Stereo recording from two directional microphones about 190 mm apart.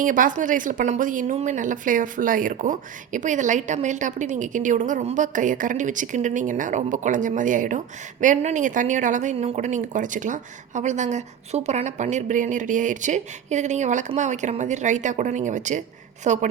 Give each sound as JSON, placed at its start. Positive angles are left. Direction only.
{"t": 0.0, "sound": "a woman's voice", "side_deg": -45}